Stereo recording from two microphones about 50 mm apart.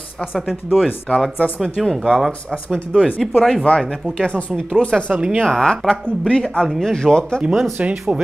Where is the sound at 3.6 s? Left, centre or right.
Centre.